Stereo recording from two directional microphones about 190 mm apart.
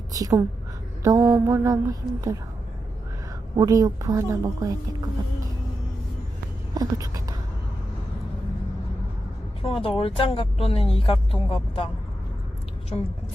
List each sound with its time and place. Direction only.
0.1 s a woman's voice: 20° right (ahead or behind)
1.0 s mantra: 15° right (ahead or behind)
3.5 s speech: 20° right (ahead or behind)
6.7 s a sound: 20° right (ahead or behind)
9.6 s a woman's voice: 30° left (ahead or behind)